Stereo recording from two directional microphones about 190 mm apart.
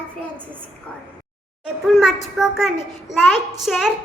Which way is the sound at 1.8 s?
Centre (ahead or behind).